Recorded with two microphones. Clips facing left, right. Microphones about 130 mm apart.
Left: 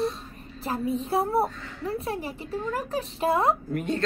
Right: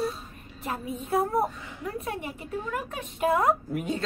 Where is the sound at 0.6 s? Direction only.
30° left (ahead or behind).